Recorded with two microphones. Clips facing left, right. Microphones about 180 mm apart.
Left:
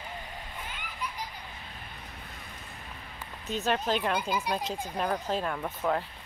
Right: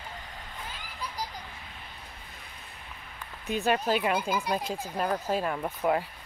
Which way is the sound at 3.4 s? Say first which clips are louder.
Right 2 dB; 10° right (ahead or behind).